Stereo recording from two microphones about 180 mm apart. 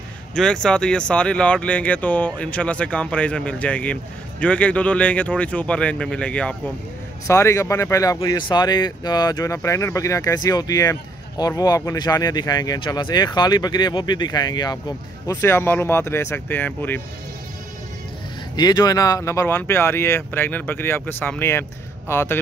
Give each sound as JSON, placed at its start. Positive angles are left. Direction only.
{"t": 0.3, "sound": "speech", "side_deg": 5}
{"t": 18.6, "sound": "speech", "side_deg": 20}